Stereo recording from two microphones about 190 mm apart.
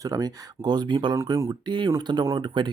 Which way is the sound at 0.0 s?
20° right (ahead or behind).